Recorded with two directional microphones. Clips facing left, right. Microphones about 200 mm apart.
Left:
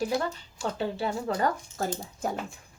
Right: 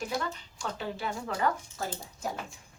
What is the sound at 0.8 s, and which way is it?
Speech, 30° left (ahead or behind).